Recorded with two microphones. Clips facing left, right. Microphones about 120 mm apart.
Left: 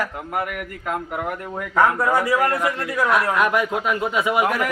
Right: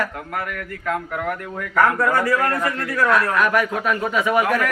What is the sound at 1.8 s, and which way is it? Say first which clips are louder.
A man's voice: even; 15° left (ahead or behind).